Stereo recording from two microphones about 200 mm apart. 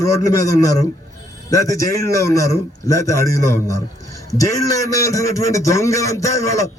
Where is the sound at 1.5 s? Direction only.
15° left (ahead or behind).